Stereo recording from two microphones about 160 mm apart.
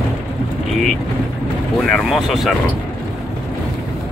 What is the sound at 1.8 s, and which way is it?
Speech, centre (ahead or behind).